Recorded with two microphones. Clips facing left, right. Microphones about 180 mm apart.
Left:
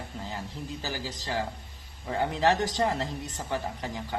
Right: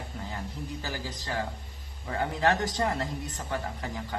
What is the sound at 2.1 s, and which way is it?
Speech, 20° left (ahead or behind).